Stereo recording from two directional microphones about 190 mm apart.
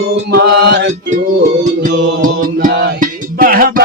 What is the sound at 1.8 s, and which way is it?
Music, 45° right (ahead or behind).